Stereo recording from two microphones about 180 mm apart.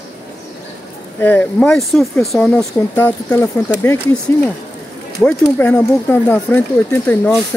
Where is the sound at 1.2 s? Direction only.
10° left (ahead or behind).